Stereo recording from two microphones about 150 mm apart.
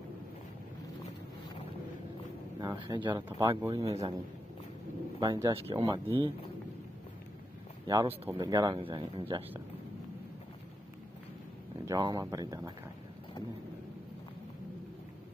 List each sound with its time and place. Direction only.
2.8 s speech: 30° right (ahead or behind)
3.3 s speech: 20° right (ahead or behind)
3.8 s a man's voice: 45° right (ahead or behind)
5.2 s speech: 30° right (ahead or behind)
7.8 s speech: 25° right (ahead or behind)
11.8 s speech: 25° right (ahead or behind)